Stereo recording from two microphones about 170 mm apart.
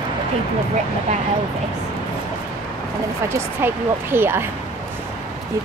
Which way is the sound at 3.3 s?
15° right (ahead or behind).